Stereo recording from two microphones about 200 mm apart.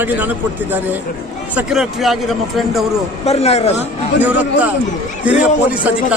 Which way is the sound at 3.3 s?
30° left (ahead or behind).